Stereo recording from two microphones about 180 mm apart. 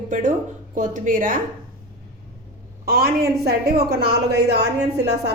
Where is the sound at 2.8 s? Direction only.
60° right (ahead or behind).